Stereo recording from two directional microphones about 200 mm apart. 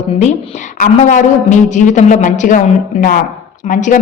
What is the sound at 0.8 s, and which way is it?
A man's voice, 40° left (ahead or behind).